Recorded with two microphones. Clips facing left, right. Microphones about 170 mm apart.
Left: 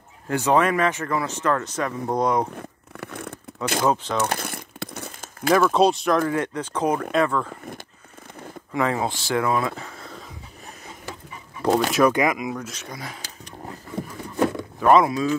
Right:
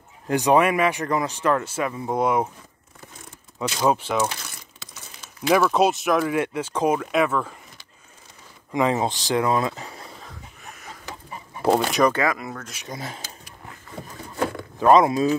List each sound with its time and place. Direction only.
0.3 s speech: 15° right (ahead or behind)
2.5 s zipper: 65° left (ahead or behind)
3.8 s speech: 10° right (ahead or behind)
4.3 s crumpling: 55° left (ahead or behind)
5.5 s speech: 5° right (ahead or behind)
8.7 s speech: 20° right (ahead or behind)
11.6 s speech: centre (ahead or behind)
12.1 s speech: 15° left (ahead or behind)
12.7 s speech: 20° right (ahead or behind)
14.4 s a sound: 20° left (ahead or behind)
14.8 s speech: 20° right (ahead or behind)